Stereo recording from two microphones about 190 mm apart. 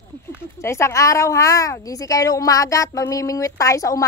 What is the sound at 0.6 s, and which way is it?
A woman's voice, 15° left (ahead or behind).